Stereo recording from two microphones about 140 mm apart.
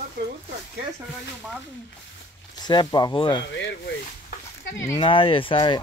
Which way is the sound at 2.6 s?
30° left (ahead or behind).